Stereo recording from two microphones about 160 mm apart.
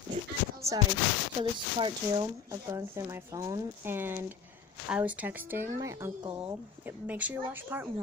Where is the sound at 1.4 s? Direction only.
30° right (ahead or behind); by 7.9 s 10° right (ahead or behind).